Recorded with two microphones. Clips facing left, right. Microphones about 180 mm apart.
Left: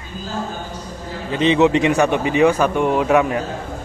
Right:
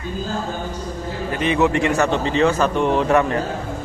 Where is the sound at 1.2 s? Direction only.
20° left (ahead or behind).